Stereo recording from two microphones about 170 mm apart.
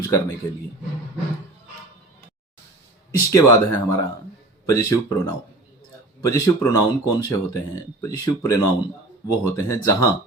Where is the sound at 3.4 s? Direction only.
15° left (ahead or behind).